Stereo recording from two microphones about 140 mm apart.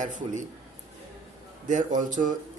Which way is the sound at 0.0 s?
60° right (ahead or behind).